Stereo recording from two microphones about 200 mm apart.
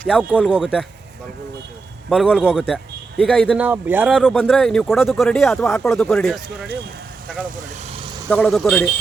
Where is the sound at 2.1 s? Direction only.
Centre (ahead or behind).